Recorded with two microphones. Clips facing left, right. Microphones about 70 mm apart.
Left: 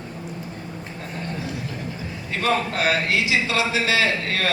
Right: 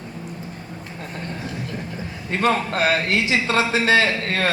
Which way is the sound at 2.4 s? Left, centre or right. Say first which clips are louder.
Right 2 dB; right.